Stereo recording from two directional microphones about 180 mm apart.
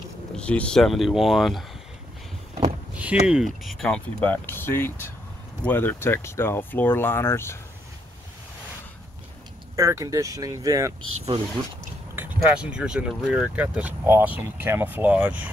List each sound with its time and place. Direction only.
0.4 s speech: 5° left (ahead or behind)
3.0 s speech: 5° right (ahead or behind); by 7.5 s 15° left (ahead or behind)
9.8 s speech: 15° right (ahead or behind)
12.2 s speech: 5° right (ahead or behind)